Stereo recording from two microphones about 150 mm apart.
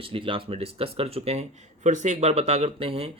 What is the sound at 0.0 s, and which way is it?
Speech, 35° right (ahead or behind).